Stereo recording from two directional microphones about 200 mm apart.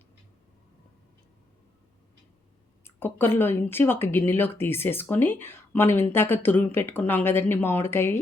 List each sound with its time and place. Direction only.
2.8 s speech: 10° left (ahead or behind)